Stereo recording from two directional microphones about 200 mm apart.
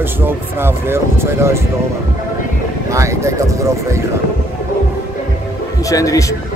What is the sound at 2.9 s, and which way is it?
Speech, 15° right (ahead or behind).